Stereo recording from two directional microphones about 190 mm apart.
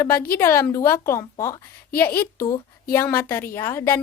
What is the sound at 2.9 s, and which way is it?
Speech, 10° left (ahead or behind).